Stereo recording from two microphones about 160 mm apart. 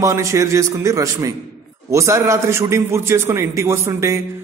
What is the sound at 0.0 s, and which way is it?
A man's voice, 20° right (ahead or behind).